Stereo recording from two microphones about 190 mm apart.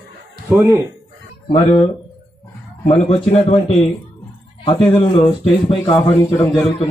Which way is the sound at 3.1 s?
30° left (ahead or behind).